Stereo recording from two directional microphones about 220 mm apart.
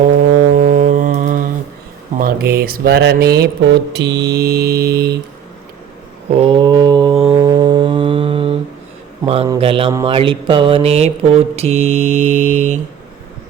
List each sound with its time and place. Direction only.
0.5 s mantra: 35° right (ahead or behind)
2.1 s speech: 40° right (ahead or behind)
6.3 s mantra: 25° right (ahead or behind)
7.3 s music: 20° right (ahead or behind)
9.2 s a man's voice: 25° right (ahead or behind)
9.9 s mantra: 20° right (ahead or behind)